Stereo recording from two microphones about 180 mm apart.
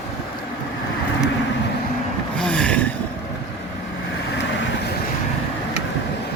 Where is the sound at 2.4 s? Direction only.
5° left (ahead or behind).